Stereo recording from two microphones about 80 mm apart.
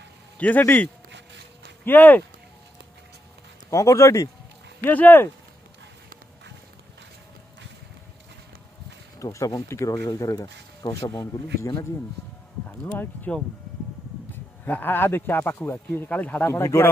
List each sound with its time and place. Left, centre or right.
0.4 s speech: left
1.9 s speech: left
3.7 s speech: left
4.8 s speech: left
9.2 s speech: left
13.3 s speech: centre
16.4 s speech: left